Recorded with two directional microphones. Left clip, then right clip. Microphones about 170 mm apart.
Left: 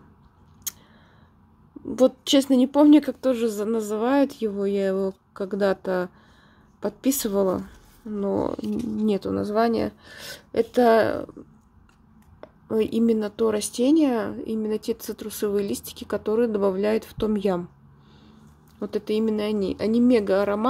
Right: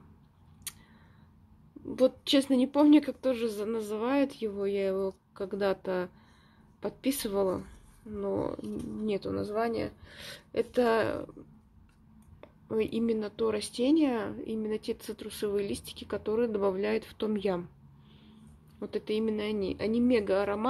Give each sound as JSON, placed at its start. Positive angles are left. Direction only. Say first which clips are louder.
{"t": 2.0, "sound": "speech", "louder": "left 6 dB", "side_deg": 30}
{"t": 12.4, "sound": "speech", "louder": "left 7 dB", "side_deg": 30}
{"t": 18.8, "sound": "speech", "louder": "left 7 dB", "side_deg": 25}